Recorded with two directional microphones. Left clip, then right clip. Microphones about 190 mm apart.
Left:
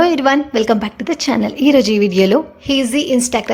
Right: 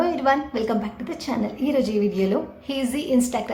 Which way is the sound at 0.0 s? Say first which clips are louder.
Left 8 dB; 40° left (ahead or behind).